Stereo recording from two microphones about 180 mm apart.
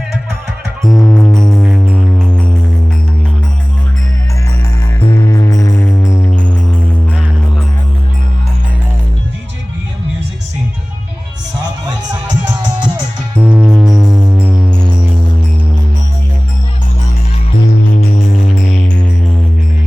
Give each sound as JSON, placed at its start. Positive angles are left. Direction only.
{"t": 0.8, "sound": "music", "side_deg": 0}
{"t": 5.0, "sound": "music", "side_deg": 30}
{"t": 13.4, "sound": "music", "side_deg": -10}